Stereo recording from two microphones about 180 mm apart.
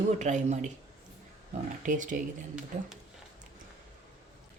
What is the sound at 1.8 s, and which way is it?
Speech, 45° right (ahead or behind).